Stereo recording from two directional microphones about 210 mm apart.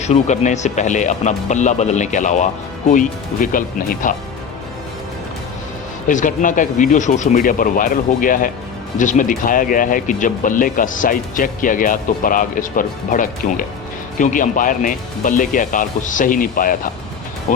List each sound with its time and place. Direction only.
0.0 s speech: 35° left (ahead or behind)
6.1 s speech: 40° left (ahead or behind)